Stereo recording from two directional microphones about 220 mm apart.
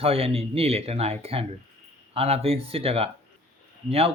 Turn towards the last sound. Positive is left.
turn(degrees=-25)  # may be behind; listen again after turning